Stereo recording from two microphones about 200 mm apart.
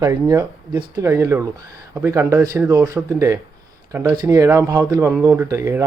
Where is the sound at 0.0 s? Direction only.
15° right (ahead or behind).